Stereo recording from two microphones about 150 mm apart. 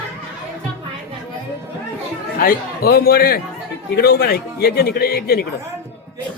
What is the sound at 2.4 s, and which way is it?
A man's voice, 80° left.